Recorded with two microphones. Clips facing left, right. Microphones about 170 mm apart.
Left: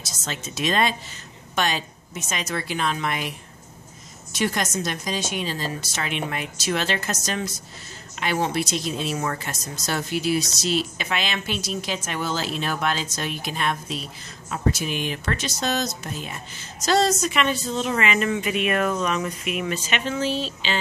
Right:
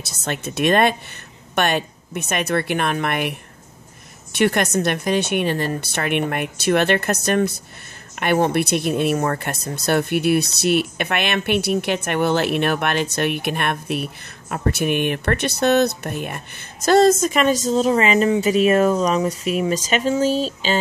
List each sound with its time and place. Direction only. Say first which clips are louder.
0.0 s speech: right 7 dB; 60° right (ahead or behind); by 20.7 s 40° right (ahead or behind)